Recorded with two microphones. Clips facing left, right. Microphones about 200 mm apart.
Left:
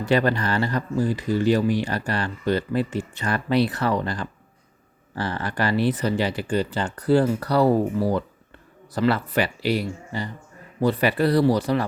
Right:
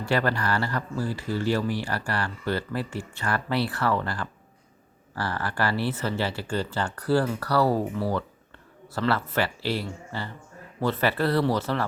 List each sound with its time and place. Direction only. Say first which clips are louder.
0.0 s speech: left 4 dB; 20° left (ahead or behind)